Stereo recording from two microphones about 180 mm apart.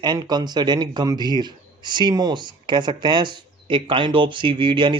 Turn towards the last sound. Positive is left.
turn(degrees=-25)  # may be behind; listen again after turning